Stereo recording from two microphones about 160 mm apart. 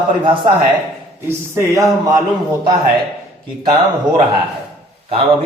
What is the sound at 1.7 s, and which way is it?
Speech, 20° right (ahead or behind).